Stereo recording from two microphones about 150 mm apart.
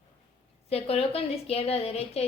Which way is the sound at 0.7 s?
40° left (ahead or behind).